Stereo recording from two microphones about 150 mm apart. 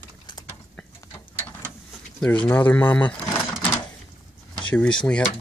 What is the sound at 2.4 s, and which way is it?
Speech, 10° left (ahead or behind).